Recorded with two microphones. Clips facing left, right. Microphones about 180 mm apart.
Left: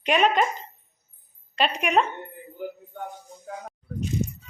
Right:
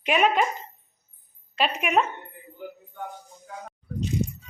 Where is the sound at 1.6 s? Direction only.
5° right (ahead or behind).